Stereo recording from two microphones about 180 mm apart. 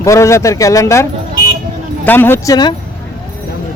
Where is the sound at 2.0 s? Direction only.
10° left (ahead or behind).